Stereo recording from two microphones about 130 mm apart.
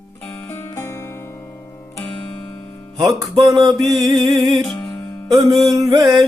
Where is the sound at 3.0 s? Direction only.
25° right (ahead or behind).